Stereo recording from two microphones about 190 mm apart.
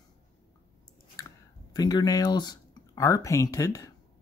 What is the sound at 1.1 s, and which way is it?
Speech, 20° left (ahead or behind).